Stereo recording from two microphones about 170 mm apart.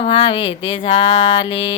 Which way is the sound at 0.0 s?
30° left (ahead or behind).